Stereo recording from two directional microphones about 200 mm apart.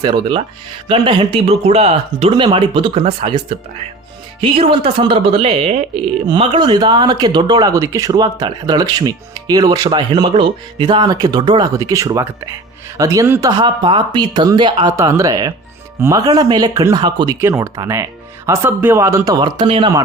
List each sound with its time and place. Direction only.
0.0 s speech: 25° right (ahead or behind)